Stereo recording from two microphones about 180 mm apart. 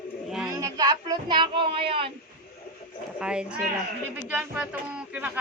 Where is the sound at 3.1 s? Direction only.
5° right (ahead or behind).